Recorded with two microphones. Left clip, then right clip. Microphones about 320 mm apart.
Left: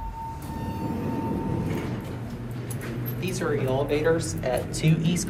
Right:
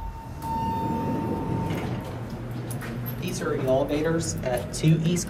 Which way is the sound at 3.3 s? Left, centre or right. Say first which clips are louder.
Right 2 dB; centre.